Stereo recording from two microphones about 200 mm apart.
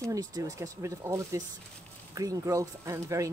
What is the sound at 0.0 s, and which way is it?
Speech, 15° right (ahead or behind).